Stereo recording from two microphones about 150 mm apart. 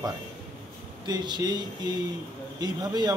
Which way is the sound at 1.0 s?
30° right (ahead or behind).